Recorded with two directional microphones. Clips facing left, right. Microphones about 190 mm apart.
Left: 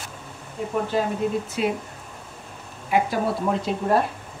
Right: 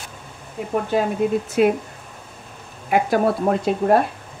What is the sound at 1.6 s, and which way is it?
Speech, 55° right (ahead or behind).